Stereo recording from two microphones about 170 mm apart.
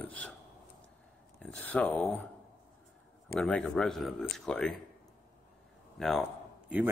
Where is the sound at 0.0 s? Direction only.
10° left (ahead or behind).